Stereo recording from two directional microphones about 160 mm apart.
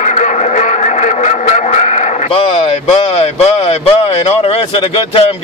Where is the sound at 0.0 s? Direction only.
50° left (ahead or behind).